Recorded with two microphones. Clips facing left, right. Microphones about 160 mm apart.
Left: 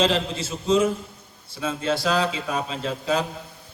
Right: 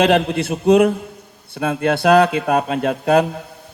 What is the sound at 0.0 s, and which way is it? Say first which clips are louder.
A man's voice: right 7 dB; 65° right (ahead or behind).